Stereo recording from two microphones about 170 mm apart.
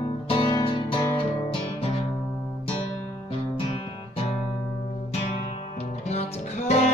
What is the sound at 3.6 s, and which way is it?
Music, 30° left (ahead or behind).